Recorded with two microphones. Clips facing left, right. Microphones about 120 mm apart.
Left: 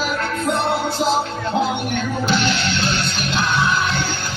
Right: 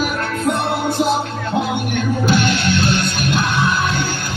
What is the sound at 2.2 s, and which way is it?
Music, 50° right (ahead or behind).